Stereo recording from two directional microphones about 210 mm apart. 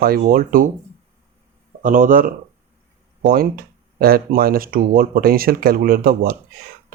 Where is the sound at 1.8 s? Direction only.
40° right (ahead or behind).